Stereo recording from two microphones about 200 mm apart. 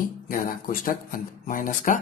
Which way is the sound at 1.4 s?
45° left (ahead or behind).